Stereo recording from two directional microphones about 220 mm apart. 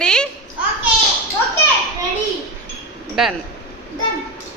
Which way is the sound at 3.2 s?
Centre (ahead or behind).